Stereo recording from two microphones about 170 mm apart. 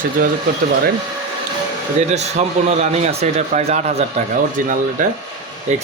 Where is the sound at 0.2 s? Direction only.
50° right (ahead or behind).